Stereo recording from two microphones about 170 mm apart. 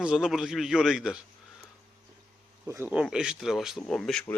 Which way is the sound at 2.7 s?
10° right (ahead or behind).